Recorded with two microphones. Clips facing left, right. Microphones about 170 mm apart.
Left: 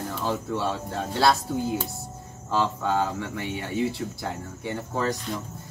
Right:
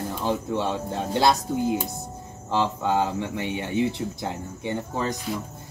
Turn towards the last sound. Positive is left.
turn(degrees=-20)  # may be behind; listen again after turning